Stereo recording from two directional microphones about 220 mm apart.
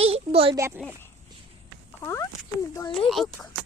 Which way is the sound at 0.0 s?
25° right (ahead or behind).